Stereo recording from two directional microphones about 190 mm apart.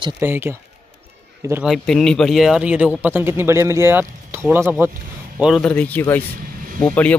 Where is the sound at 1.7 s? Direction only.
Centre (ahead or behind).